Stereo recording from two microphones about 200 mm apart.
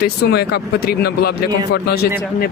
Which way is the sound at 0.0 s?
55° left (ahead or behind).